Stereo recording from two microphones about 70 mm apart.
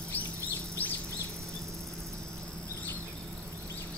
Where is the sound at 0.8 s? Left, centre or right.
Left.